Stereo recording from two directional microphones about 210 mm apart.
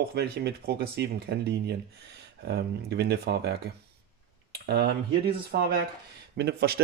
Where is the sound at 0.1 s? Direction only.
50° right (ahead or behind).